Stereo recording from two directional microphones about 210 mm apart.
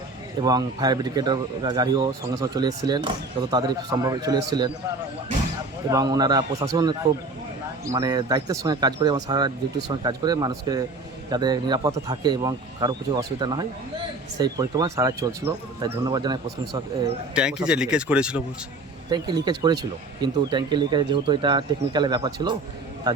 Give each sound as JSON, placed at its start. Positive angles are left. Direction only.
{"t": 0.4, "sound": "speech", "side_deg": -20}
{"t": 5.9, "sound": "speech", "side_deg": -20}
{"t": 17.3, "sound": "speech", "side_deg": -5}
{"t": 19.1, "sound": "speech", "side_deg": -20}